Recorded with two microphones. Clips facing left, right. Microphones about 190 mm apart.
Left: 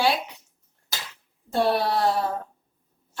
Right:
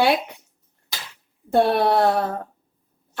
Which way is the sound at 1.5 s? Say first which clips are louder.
Right 5 dB; 55° right (ahead or behind).